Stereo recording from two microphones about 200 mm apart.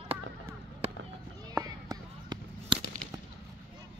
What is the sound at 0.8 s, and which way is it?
Fireworks, 30° right (ahead or behind).